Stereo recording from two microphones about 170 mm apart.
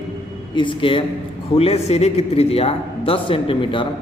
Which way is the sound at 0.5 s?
30° left (ahead or behind).